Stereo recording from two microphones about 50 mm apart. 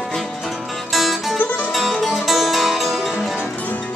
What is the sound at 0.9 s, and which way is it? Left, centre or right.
Music, centre.